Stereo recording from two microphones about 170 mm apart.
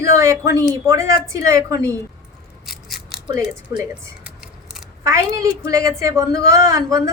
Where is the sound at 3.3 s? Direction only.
25° right (ahead or behind).